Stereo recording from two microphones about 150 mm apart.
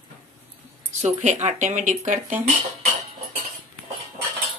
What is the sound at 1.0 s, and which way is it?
Speech, 50° right (ahead or behind).